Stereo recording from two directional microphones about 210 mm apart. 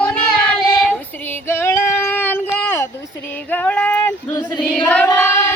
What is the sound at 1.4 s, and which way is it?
Female singing, 10° left (ahead or behind).